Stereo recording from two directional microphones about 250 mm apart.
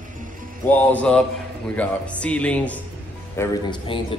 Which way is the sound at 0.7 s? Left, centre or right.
Centre.